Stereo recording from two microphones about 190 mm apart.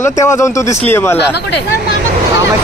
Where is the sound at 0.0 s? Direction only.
15° left (ahead or behind).